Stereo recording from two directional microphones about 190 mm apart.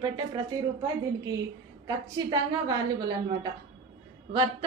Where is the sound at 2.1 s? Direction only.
20° right (ahead or behind).